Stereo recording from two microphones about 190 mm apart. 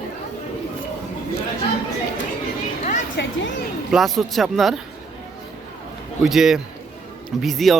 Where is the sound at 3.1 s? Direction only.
75° left (ahead or behind).